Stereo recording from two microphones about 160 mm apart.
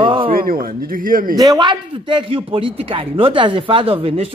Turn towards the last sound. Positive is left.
turn(degrees=-35)  # may be behind; listen again after turning